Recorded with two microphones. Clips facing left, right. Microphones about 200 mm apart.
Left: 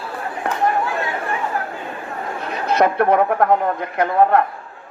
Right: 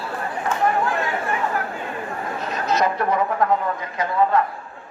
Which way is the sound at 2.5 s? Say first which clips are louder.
Left 4 dB; 60° left (ahead or behind).